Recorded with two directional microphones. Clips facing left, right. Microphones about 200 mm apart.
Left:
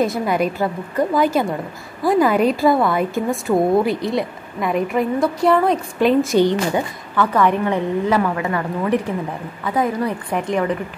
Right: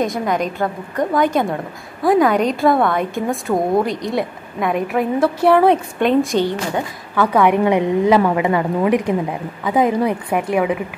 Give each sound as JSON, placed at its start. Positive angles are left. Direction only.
{"t": 0.0, "sound": "a woman's voice", "side_deg": 5}
{"t": 7.2, "sound": "a woman's voice", "side_deg": -10}